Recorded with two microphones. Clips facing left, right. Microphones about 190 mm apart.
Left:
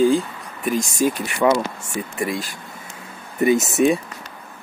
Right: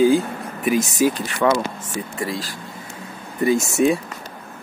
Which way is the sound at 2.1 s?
20° left (ahead or behind).